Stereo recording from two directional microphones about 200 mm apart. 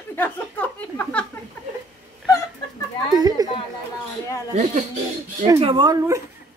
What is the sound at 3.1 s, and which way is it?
Speech, 20° right (ahead or behind).